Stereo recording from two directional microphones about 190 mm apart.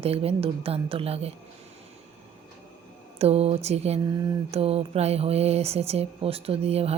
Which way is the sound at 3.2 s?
35° right (ahead or behind).